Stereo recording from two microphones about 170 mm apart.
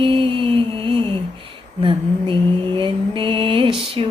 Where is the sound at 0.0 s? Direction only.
30° right (ahead or behind).